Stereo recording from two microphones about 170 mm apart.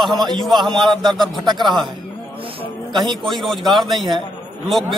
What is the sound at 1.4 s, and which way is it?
Speech, 25° right (ahead or behind).